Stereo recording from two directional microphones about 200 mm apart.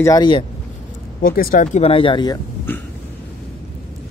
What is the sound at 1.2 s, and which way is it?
Speech, 45° left (ahead or behind).